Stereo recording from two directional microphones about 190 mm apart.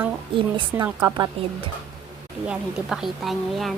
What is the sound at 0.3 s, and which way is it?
Speech, 25° right (ahead or behind).